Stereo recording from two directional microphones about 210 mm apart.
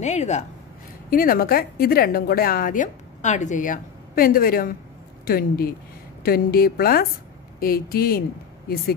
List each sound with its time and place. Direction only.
0.0 s speech: 35° left (ahead or behind)
1.1 s a woman's voice: 45° left (ahead or behind)